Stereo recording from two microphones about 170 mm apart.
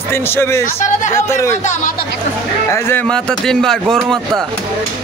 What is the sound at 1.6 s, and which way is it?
Speech, 45° left (ahead or behind).